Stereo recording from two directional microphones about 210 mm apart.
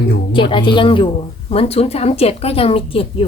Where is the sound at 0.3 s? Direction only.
25° left (ahead or behind).